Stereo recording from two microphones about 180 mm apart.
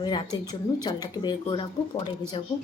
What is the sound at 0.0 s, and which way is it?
Speech, 20° left (ahead or behind).